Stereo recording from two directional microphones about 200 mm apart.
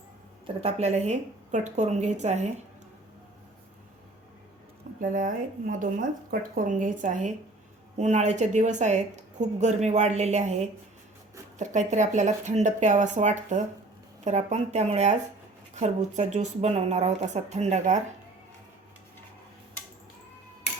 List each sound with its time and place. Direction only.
0.4 s a woman's voice: 30° right (ahead or behind)
4.9 s a woman's voice: 40° right (ahead or behind)
11.5 s a woman's voice: 35° right (ahead or behind)